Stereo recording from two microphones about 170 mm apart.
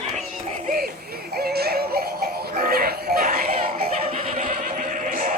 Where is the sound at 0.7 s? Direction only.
65° right (ahead or behind).